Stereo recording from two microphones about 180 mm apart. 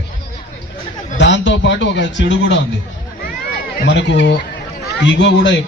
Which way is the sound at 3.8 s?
75° left (ahead or behind).